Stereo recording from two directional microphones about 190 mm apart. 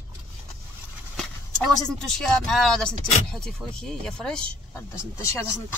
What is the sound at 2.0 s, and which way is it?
Speech, 5° left (ahead or behind).